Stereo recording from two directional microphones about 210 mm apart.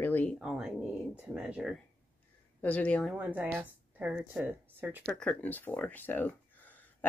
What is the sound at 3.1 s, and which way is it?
Speech, 5° right (ahead or behind).